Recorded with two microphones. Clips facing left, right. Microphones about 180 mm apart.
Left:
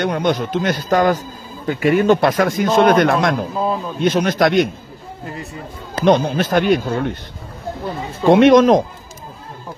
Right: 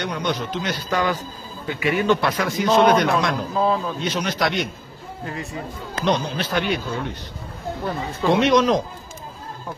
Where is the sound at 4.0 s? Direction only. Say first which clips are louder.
Left 8 dB; 50° left (ahead or behind).